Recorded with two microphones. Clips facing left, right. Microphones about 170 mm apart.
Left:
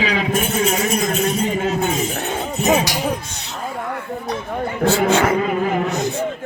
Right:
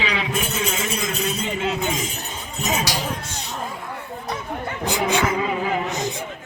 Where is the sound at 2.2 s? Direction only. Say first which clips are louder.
Left 9 dB; 65° left (ahead or behind).